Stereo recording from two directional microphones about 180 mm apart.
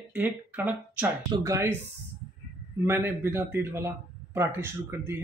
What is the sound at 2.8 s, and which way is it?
Speech, 15° right (ahead or behind).